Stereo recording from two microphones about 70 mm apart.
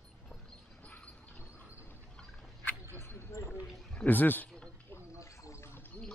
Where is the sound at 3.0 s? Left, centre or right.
Left.